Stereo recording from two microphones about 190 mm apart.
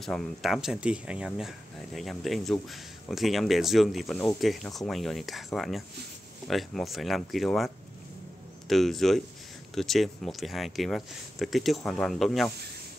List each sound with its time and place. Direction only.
0.0 s speech: centre (ahead or behind)